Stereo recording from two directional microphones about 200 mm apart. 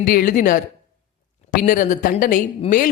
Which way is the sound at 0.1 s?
45° left (ahead or behind).